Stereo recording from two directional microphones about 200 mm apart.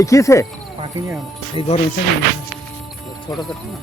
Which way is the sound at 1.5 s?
35° left (ahead or behind).